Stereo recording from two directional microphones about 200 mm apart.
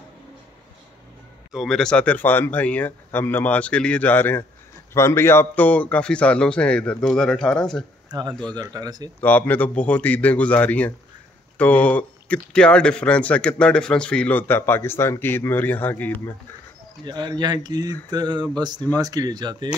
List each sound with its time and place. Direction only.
1.5 s a man's voice: centre (ahead or behind)
8.1 s speech: 20° right (ahead or behind)
9.2 s speech: 10° left (ahead or behind)
17.0 s speech: 20° right (ahead or behind)